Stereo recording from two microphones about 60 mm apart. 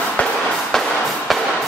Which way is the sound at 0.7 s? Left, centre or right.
Centre.